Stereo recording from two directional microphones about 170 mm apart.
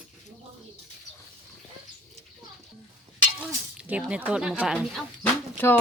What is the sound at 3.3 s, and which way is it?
Speech, 10° right (ahead or behind).